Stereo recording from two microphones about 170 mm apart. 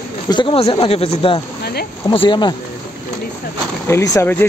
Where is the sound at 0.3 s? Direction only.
30° left (ahead or behind).